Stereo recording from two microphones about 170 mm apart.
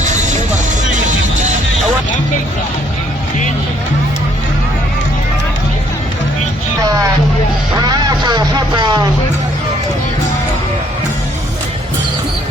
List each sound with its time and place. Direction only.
0.0 s music: 45° right (ahead or behind)
7.8 s music: 25° right (ahead or behind)